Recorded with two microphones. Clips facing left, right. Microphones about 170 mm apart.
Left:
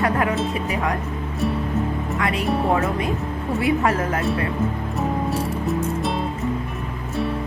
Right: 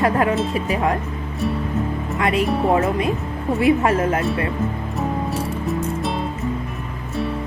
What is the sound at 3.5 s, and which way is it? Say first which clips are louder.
Speech: right 3 dB; 25° right (ahead or behind).